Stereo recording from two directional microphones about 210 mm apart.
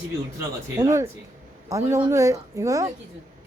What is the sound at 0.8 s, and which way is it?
A woman's voice, 15° right (ahead or behind).